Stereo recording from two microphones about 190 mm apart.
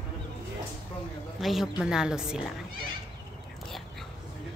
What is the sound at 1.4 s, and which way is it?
A woman's voice, centre (ahead or behind).